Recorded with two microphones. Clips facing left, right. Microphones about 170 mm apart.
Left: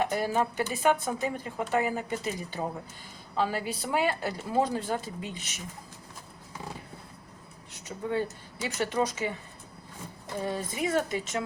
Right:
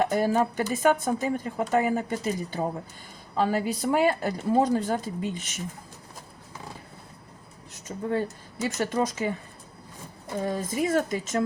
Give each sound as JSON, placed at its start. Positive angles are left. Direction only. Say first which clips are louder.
{"t": 0.0, "sound": "speech", "louder": "right 4 dB", "side_deg": -45}
{"t": 7.7, "sound": "speech", "louder": "right 3 dB", "side_deg": -45}
{"t": 10.4, "sound": "speech", "louder": "right 4 dB", "side_deg": -45}